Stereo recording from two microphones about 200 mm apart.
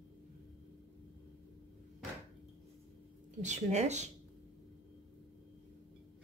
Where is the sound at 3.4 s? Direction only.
35° right (ahead or behind).